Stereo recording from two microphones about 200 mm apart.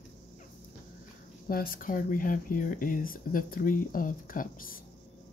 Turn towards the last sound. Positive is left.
turn(degrees=45)  # may be behind; listen again after turning